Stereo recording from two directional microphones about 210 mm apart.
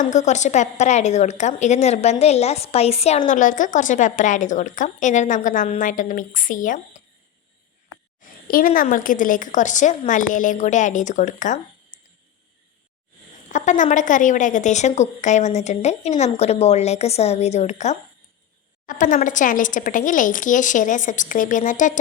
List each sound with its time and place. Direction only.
0.0 s a woman's voice: 35° left (ahead or behind)
8.2 s a woman's voice: 45° left (ahead or behind)
11.9 s a sound: 35° left (ahead or behind)
13.5 s a woman's voice: 35° left (ahead or behind)